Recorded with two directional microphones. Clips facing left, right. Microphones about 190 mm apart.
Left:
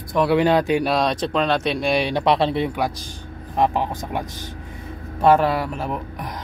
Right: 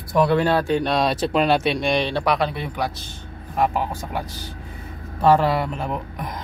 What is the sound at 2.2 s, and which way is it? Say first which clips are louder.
Speech: left 4 dB; 25° left (ahead or behind).